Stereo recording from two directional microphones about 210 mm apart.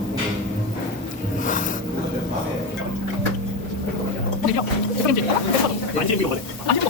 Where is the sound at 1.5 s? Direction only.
40° left (ahead or behind).